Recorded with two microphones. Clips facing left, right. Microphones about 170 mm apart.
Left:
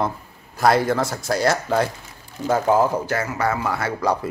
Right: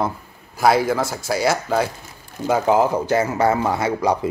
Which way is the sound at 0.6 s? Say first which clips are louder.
Right 1 dB; 5° right (ahead or behind).